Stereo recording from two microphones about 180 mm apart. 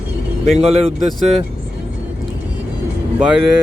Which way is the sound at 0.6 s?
35° right (ahead or behind).